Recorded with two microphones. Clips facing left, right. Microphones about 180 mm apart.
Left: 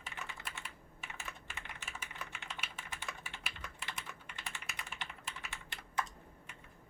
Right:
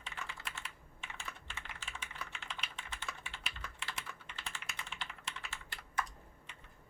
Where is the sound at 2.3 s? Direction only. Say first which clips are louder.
Even; 5° left (ahead or behind).